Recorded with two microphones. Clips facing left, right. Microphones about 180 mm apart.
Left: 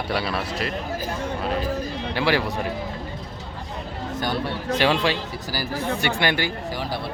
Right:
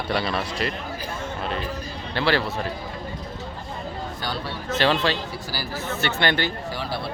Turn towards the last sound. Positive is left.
turn(degrees=10)  # may be behind; listen again after turning